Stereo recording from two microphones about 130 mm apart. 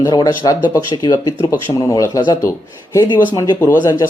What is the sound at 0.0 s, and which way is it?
Speech, 30° left (ahead or behind).